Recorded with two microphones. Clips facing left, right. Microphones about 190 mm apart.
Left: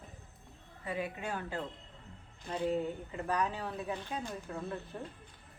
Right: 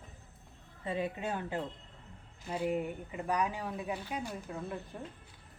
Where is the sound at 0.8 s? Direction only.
25° right (ahead or behind).